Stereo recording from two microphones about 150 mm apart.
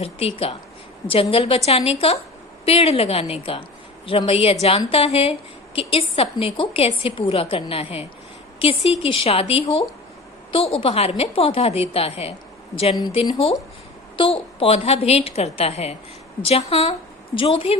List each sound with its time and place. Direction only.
0.0 s a woman's voice: 40° left (ahead or behind)